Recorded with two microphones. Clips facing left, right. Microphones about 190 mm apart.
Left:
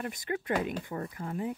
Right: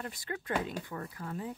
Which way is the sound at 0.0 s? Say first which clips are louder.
Left 5 dB; 15° left (ahead or behind).